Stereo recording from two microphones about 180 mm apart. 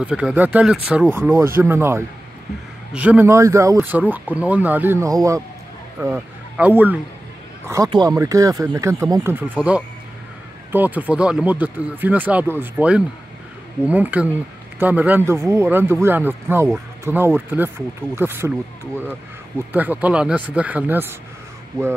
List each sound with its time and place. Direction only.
0.0 s speech: 5° right (ahead or behind)
10.7 s speech: 10° right (ahead or behind)
19.7 s speech: 10° right (ahead or behind)